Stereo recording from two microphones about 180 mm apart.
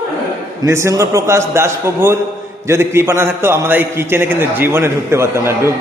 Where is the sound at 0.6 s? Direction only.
15° right (ahead or behind).